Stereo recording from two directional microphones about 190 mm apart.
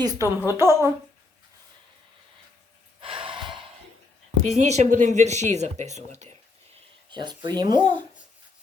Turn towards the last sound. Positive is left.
turn(degrees=-20)  # may be behind; listen again after turning